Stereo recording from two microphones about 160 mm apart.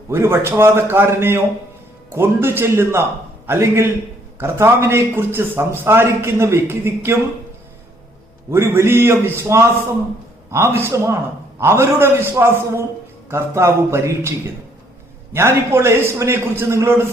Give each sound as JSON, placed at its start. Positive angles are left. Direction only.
{"t": 0.1, "sound": "a man's voice", "side_deg": -15}
{"t": 8.4, "sound": "a man's voice", "side_deg": -15}